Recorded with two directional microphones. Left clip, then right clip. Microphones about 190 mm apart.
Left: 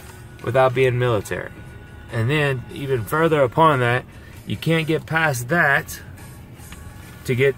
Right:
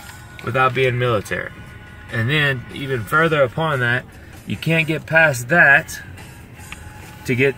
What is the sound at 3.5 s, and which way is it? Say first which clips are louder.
Speech: left 3 dB; 55° left (ahead or behind).